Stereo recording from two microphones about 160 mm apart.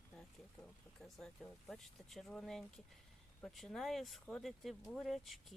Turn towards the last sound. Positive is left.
turn(degrees=0)  # may be behind; listen again after turning